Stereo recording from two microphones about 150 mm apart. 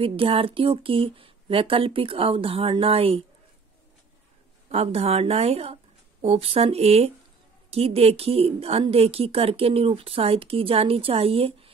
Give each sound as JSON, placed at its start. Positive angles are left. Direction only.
{"t": 0.0, "sound": "a woman's voice", "side_deg": -35}
{"t": 4.6, "sound": "a woman's voice", "side_deg": -45}